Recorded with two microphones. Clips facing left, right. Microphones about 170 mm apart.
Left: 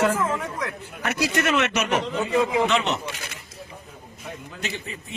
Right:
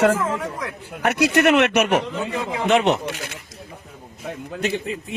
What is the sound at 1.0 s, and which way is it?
Speech, 65° right (ahead or behind).